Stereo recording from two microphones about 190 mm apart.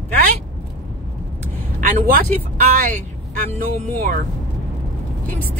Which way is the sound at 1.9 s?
50° right (ahead or behind).